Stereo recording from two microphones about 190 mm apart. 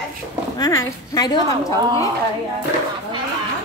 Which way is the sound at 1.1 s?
20° left (ahead or behind).